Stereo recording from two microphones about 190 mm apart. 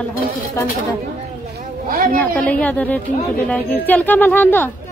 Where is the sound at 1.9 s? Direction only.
50° right (ahead or behind).